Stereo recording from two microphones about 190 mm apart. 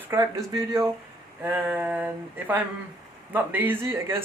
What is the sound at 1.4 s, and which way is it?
Speech, 10° right (ahead or behind).